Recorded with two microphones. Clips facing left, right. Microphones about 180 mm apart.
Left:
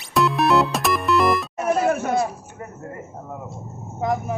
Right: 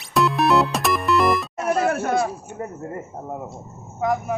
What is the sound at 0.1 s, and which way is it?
Music, centre (ahead or behind).